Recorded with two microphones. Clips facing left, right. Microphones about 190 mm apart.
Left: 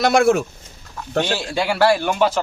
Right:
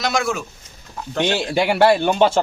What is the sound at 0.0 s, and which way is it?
Speech, 55° left (ahead or behind).